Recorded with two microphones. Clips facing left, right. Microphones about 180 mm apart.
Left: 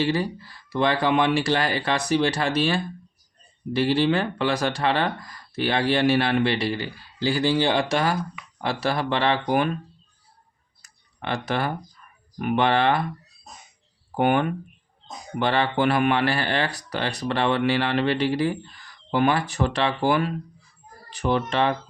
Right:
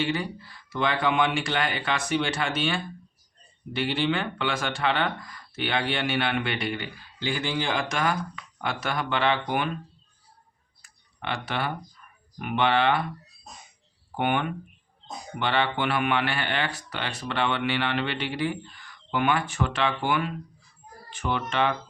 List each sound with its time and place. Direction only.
0.0 s speech: 35° left (ahead or behind)
10.8 s a sound: 40° left (ahead or behind)
12.4 s speech: 45° left (ahead or behind)
14.2 s speech: 45° left (ahead or behind)